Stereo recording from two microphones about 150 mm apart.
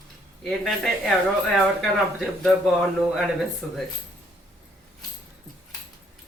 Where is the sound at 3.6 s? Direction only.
Centre (ahead or behind).